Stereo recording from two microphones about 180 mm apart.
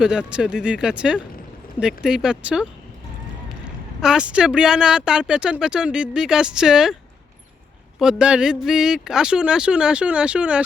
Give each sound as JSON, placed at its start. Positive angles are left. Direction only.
{"t": 0.0, "sound": "speech", "side_deg": -5}
{"t": 4.0, "sound": "speech", "side_deg": -5}
{"t": 7.9, "sound": "speech", "side_deg": -5}